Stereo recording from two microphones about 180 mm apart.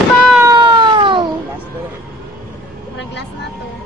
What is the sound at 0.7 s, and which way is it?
Cat, 25° right (ahead or behind).